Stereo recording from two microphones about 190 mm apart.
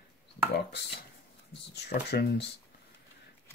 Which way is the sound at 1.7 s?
60° left (ahead or behind).